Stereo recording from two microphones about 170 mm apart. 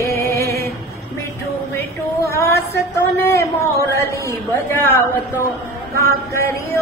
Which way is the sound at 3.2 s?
15° left (ahead or behind).